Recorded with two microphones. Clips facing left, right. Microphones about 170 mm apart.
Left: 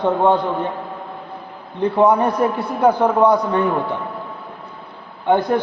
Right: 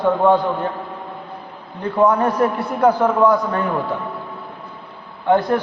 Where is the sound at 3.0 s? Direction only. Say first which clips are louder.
Left 1 dB; 20° left (ahead or behind).